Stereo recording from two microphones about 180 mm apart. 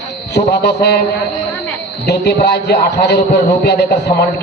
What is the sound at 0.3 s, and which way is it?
Speech, 65° left (ahead or behind).